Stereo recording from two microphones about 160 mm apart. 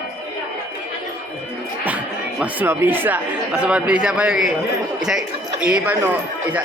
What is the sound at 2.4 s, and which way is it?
A man's voice, 10° right (ahead or behind).